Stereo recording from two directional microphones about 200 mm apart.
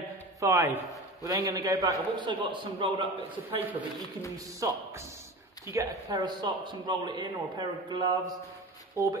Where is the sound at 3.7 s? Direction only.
10° right (ahead or behind).